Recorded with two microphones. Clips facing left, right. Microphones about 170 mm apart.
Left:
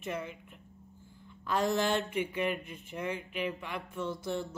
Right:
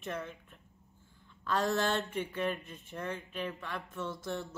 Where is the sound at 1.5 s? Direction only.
15° left (ahead or behind).